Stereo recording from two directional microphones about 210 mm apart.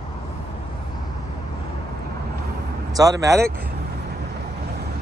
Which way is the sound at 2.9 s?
15° right (ahead or behind).